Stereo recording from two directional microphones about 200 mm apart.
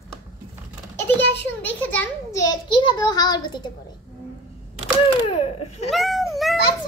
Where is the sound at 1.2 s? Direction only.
60° left (ahead or behind).